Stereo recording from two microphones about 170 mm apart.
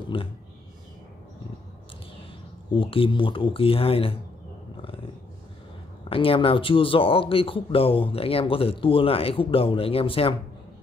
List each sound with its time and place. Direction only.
0.1 s speech: 30° left (ahead or behind)
2.7 s speech: 30° left (ahead or behind)
6.0 s speech: 30° left (ahead or behind)